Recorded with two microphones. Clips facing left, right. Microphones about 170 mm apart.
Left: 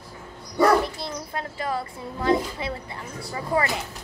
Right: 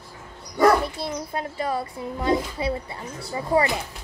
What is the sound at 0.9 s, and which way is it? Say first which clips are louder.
A woman's voice: right 3 dB; 20° right (ahead or behind).